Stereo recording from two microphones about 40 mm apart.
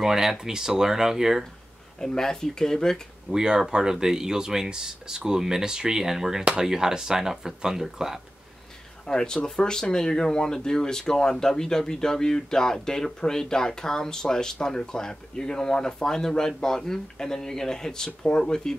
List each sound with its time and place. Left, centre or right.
0.0 s speech: centre
2.0 s speech: centre
3.3 s speech: centre
9.0 s speech: centre